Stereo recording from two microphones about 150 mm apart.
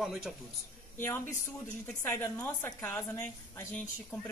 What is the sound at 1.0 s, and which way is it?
A woman's voice, 15° left (ahead or behind).